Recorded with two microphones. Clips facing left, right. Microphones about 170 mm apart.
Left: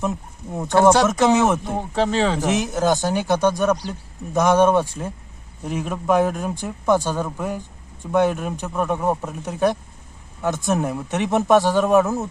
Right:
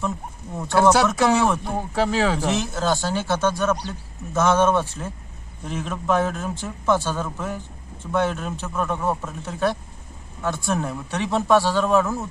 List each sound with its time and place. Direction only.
0.5 s a man's voice: 20° left (ahead or behind)
1.7 s speech: centre (ahead or behind)
2.4 s a man's voice: 20° left (ahead or behind)